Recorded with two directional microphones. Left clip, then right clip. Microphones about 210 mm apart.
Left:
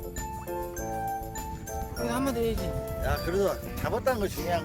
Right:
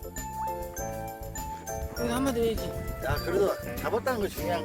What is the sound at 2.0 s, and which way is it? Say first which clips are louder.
Music: right 1 dB; centre (ahead or behind).